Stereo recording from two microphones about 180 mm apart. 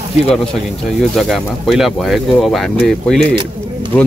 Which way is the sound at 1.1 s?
Centre (ahead or behind).